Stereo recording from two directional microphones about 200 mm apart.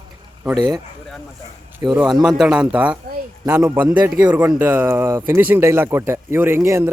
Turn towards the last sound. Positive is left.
turn(degrees=-15)  # may be behind; listen again after turning